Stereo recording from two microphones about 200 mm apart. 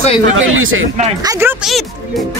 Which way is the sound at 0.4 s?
85° right.